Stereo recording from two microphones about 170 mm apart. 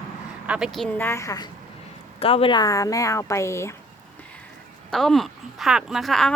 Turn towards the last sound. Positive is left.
turn(degrees=0)  # may be behind; listen again after turning